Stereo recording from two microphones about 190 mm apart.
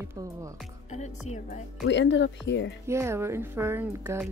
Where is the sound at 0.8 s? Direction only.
35° left (ahead or behind).